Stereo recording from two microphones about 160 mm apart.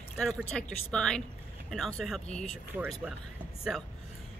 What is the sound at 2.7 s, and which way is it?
Speech, 15° right (ahead or behind).